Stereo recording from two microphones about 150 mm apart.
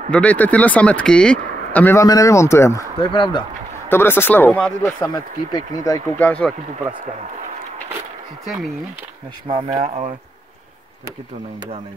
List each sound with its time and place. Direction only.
0.1 s speech: 10° left (ahead or behind)
3.0 s speech: 35° left (ahead or behind)
3.9 s speech: 15° left (ahead or behind)
4.8 s speech: 25° left (ahead or behind)
6.1 s speech: 10° left (ahead or behind)
9.5 s speech: 40° right (ahead or behind)